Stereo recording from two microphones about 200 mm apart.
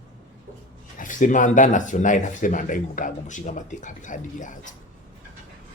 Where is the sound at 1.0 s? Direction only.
40° left (ahead or behind).